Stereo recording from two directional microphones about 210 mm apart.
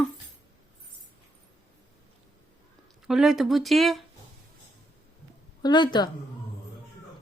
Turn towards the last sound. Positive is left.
turn(degrees=20)  # may be behind; listen again after turning